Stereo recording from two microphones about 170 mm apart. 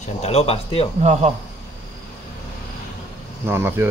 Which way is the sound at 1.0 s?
40° right (ahead or behind).